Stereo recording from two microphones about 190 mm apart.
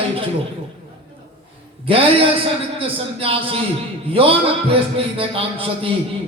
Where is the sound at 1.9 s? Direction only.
30° right (ahead or behind).